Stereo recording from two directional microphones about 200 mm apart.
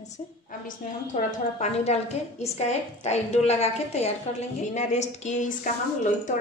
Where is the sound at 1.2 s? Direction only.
35° left (ahead or behind).